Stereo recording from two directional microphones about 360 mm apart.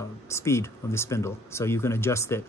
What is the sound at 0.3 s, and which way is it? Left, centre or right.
Speech, centre.